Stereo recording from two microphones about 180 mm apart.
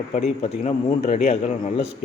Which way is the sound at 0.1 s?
40° left (ahead or behind).